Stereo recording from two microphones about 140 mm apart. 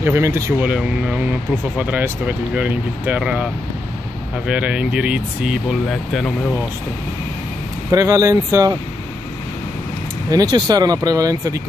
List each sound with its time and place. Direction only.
0.0 s speech: 15° right (ahead or behind)
0.7 s speech: 5° right (ahead or behind)
4.5 s speech: 10° right (ahead or behind)
7.9 s speech: 20° right (ahead or behind)
10.3 s speech: 25° right (ahead or behind)